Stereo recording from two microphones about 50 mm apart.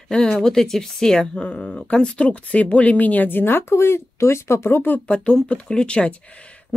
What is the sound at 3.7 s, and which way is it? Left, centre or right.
Speech, left.